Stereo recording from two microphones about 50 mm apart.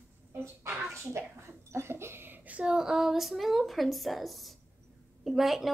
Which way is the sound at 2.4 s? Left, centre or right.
Right.